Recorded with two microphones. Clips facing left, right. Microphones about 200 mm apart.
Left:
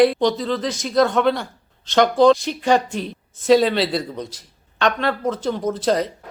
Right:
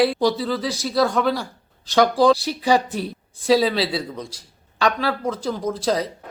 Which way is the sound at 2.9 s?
5° right (ahead or behind).